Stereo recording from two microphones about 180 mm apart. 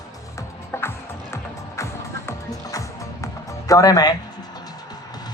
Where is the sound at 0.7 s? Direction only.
15° left (ahead or behind).